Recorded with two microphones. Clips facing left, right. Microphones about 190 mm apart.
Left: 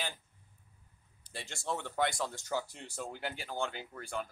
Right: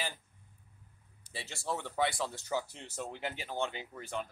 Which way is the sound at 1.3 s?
5° right (ahead or behind).